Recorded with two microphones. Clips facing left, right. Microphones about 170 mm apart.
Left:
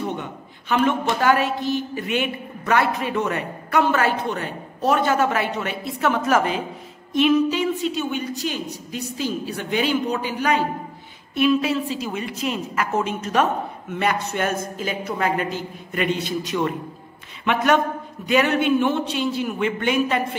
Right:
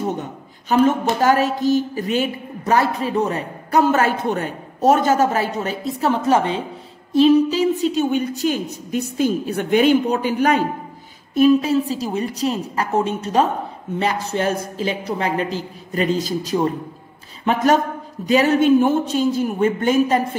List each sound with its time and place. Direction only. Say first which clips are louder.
0.0 s a woman's voice: right 3 dB; 40° right (ahead or behind)